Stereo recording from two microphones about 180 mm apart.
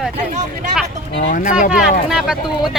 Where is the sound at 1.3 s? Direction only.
45° left (ahead or behind).